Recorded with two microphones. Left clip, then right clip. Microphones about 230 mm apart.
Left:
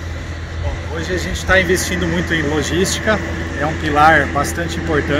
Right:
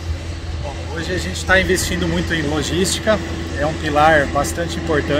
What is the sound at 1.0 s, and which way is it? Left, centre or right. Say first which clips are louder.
Speech: left 1 dB; centre.